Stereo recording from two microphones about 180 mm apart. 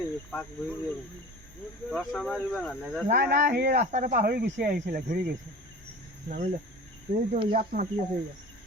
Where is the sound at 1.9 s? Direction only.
5° left (ahead or behind).